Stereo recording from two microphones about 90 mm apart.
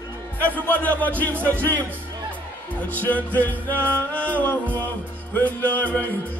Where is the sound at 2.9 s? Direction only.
20° left (ahead or behind).